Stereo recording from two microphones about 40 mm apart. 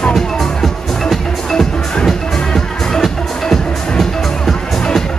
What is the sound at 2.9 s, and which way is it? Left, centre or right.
Music, centre.